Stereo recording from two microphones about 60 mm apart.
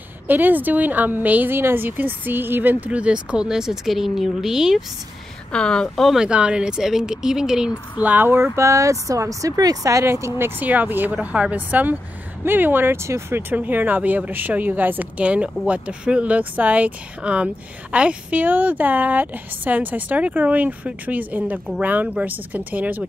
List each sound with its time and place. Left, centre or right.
0.3 s a woman's voice: right; by 4.8 s centre
5.5 s speech: centre
6.1 s speech: centre
8.0 s a woman's voice: right
8.3 s a woman's voice: right
10.0 s speech: right
10.6 s a woman's voice: right
11.1 s speech: centre
11.5 s a woman's voice: right
13.5 s speech: right
15.1 s a woman's voice: right